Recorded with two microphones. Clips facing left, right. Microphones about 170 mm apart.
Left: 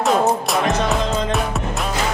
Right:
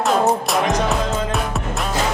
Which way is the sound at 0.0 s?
Centre (ahead or behind).